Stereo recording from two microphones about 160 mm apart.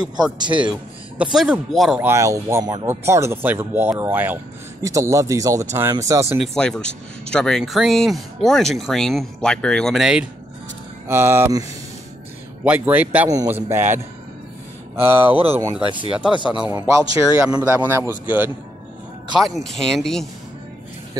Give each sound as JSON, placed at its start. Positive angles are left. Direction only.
{"t": 0.2, "sound": "speech", "side_deg": -30}
{"t": 0.7, "sound": "speech", "side_deg": -5}
{"t": 2.0, "sound": "speech", "side_deg": -15}
{"t": 6.4, "sound": "speech", "side_deg": 5}
{"t": 11.1, "sound": "speech", "side_deg": -15}
{"t": 12.6, "sound": "speech", "side_deg": -10}
{"t": 15.2, "sound": "speech", "side_deg": -35}
{"t": 15.5, "sound": "speech", "side_deg": -15}
{"t": 16.3, "sound": "a man's voice", "side_deg": 30}
{"t": 16.6, "sound": "speech", "side_deg": -15}
{"t": 19.3, "sound": "speech", "side_deg": 0}